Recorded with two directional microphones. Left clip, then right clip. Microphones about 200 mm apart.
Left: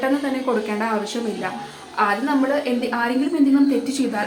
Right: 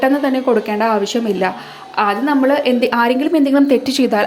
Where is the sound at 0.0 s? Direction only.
30° right (ahead or behind).